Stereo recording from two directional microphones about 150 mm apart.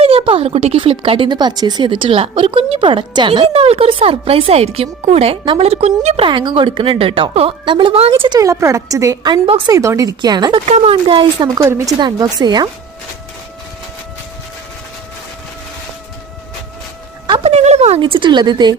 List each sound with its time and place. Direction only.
0.0 s speech: 40° right (ahead or behind)
8.3 s a woman's voice: 20° right (ahead or behind)
9.7 s a woman's voice: 20° right (ahead or behind)
10.7 s a woman's voice: 40° right (ahead or behind)
17.2 s a woman's voice: 40° right (ahead or behind)
18.0 s speech: 35° right (ahead or behind)